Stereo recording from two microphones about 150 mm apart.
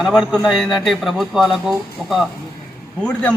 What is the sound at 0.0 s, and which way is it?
Speech, 5° right (ahead or behind).